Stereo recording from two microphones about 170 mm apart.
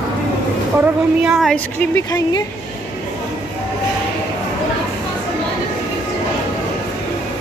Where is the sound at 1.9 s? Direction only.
20° left (ahead or behind).